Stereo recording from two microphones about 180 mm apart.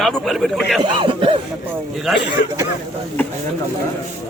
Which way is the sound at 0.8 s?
30° right (ahead or behind).